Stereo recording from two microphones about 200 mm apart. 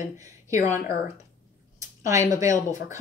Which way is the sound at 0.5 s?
15° right (ahead or behind).